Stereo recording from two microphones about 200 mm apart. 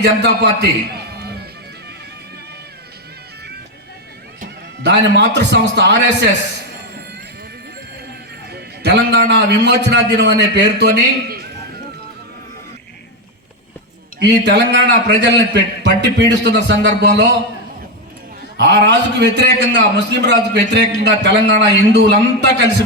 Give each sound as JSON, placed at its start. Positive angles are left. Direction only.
{"t": 0.0, "sound": "a man's voice", "side_deg": -60}
{"t": 4.4, "sound": "speech", "side_deg": -60}
{"t": 8.5, "sound": "a man's voice", "side_deg": -60}
{"t": 14.2, "sound": "a man's voice", "side_deg": -60}
{"t": 18.5, "sound": "a man's voice", "side_deg": -60}